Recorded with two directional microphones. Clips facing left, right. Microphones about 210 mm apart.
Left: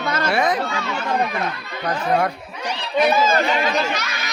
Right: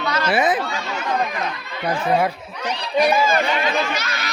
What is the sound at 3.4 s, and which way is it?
Speech, 40° left (ahead or behind).